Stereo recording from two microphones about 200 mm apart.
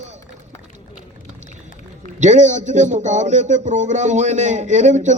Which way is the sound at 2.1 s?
35° right (ahead or behind).